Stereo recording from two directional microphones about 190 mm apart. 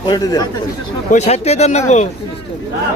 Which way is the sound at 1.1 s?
35° left (ahead or behind).